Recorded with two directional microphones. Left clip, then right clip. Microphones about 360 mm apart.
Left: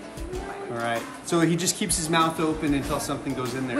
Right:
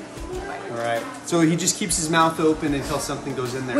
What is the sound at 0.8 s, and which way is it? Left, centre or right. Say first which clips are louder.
Speech: right 3 dB; centre.